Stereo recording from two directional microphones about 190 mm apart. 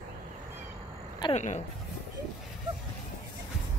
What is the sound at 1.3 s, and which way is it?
Speech, 40° left (ahead or behind).